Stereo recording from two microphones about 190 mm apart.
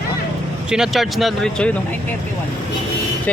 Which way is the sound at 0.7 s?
Centre (ahead or behind).